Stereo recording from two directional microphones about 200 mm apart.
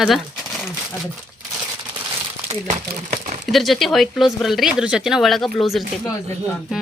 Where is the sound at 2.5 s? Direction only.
40° right (ahead or behind).